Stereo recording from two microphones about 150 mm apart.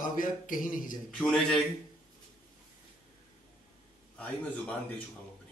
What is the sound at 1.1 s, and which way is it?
Speech, centre (ahead or behind).